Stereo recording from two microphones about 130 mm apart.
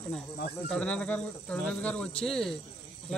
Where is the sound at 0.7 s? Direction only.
10° left (ahead or behind).